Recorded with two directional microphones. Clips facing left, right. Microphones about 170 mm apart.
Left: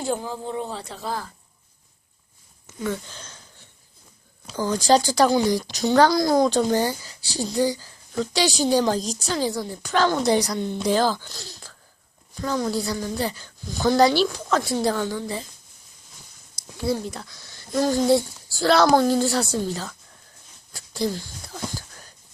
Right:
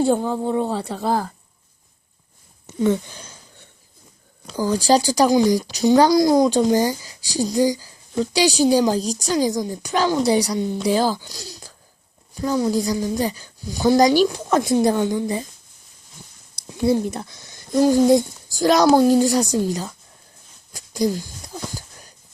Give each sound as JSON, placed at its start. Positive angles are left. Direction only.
{"t": 0.1, "sound": "speech", "side_deg": -60}
{"t": 2.6, "sound": "speech", "side_deg": -25}
{"t": 3.1, "sound": "speech", "side_deg": -10}
{"t": 4.5, "sound": "a woman's voice", "side_deg": -10}
{"t": 16.6, "sound": "a woman's voice", "side_deg": -20}
{"t": 20.7, "sound": "a sound", "side_deg": -15}